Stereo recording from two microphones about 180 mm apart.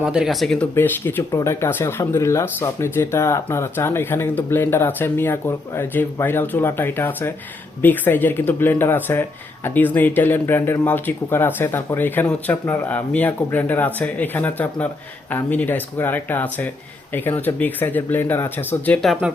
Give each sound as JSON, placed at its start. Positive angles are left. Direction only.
{"t": 0.0, "sound": "speech", "side_deg": -5}
{"t": 19.2, "sound": "speech", "side_deg": -5}